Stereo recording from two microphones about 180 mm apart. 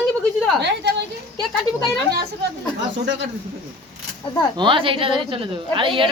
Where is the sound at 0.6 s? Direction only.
70° right (ahead or behind).